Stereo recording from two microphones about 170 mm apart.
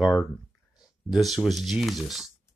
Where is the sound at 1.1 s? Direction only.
Centre (ahead or behind).